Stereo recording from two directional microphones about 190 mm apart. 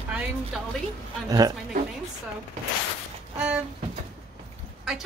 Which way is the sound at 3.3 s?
5° right (ahead or behind).